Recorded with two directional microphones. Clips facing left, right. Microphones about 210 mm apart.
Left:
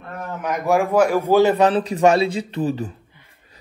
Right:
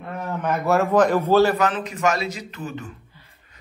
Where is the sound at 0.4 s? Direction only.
15° left (ahead or behind).